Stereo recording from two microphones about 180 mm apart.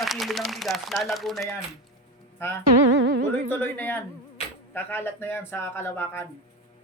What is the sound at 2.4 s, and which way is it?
Speech, 15° left (ahead or behind).